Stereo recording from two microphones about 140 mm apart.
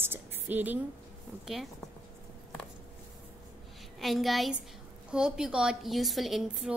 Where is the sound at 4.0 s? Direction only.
Centre (ahead or behind).